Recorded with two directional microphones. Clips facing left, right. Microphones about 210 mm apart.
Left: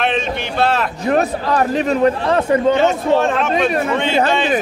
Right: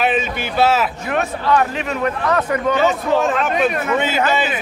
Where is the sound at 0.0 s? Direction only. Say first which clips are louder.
Even; 5° right (ahead or behind).